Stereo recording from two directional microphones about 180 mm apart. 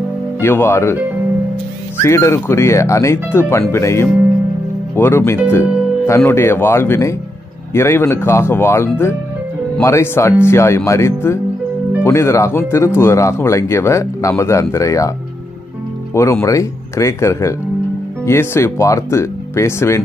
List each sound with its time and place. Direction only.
0.4 s speech: 10° left (ahead or behind)
2.0 s speech: 15° left (ahead or behind)
16.2 s speech: 15° left (ahead or behind)